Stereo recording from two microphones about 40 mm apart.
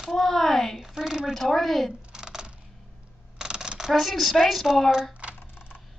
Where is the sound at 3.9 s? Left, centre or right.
Centre.